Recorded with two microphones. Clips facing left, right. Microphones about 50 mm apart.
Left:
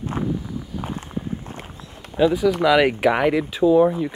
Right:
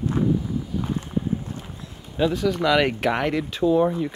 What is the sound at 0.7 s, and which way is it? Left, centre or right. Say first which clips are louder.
Clip-clop: right 2 dB; left.